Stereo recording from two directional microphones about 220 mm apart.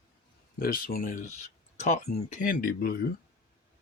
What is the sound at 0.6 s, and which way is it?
Speech, 40° left (ahead or behind).